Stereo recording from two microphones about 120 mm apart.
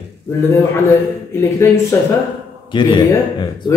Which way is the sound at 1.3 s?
20° left (ahead or behind).